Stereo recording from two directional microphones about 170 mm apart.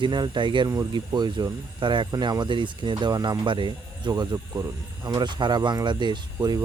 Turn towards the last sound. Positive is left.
turn(degrees=-25)  # may be behind; listen again after turning